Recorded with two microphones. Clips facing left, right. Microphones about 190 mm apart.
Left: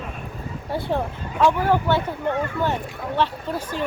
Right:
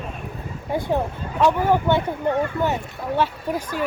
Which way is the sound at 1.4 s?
15° right (ahead or behind).